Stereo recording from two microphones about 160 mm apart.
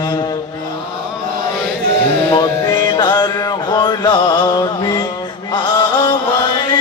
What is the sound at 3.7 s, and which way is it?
Mantra, 30° left (ahead or behind).